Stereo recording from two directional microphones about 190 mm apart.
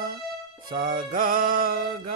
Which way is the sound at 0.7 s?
50° right (ahead or behind).